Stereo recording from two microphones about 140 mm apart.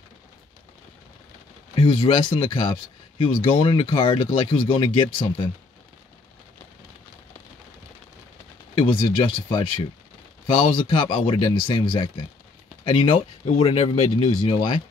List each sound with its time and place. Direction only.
1.8 s speech: 35° left (ahead or behind)
8.7 s speech: 40° left (ahead or behind)
13.7 s speech: 50° left (ahead or behind)
14.3 s speech: 35° left (ahead or behind)